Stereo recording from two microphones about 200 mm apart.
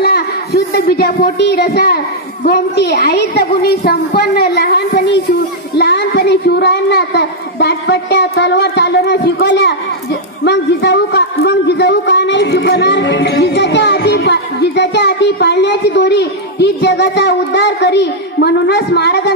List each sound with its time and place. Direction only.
0.0 s a man's voice: 55° left (ahead or behind)